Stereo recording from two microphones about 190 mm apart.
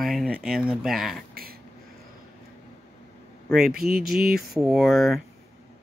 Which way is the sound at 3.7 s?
55° right (ahead or behind).